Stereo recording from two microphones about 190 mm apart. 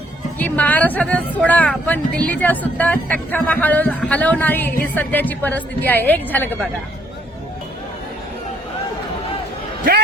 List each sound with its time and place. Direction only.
0.3 s speech: 10° left (ahead or behind)